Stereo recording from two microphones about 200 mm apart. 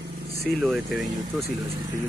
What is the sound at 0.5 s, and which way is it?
Speech, centre (ahead or behind).